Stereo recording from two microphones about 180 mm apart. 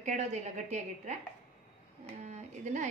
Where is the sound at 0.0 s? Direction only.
40° right (ahead or behind).